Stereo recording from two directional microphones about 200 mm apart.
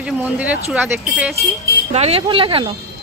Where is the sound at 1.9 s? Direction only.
30° right (ahead or behind).